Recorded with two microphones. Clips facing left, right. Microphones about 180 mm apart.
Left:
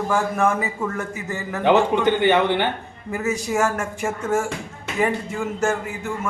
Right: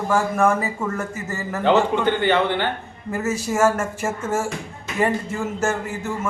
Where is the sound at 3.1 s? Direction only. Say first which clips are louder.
Even; centre (ahead or behind).